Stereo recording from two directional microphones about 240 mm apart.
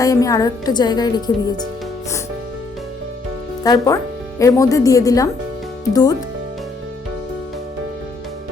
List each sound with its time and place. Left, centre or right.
0.0 s a woman's voice: centre
3.6 s a woman's voice: centre